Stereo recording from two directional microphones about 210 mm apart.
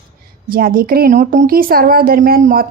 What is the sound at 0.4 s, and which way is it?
A woman's voice, 45° right (ahead or behind).